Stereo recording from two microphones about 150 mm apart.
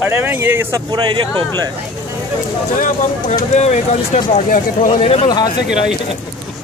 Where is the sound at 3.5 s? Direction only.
50° left (ahead or behind).